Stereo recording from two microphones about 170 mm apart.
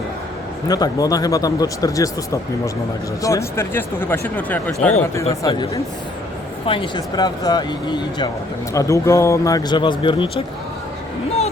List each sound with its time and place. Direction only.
0.7 s speech: 20° left (ahead or behind)
5.5 s speech: 25° left (ahead or behind)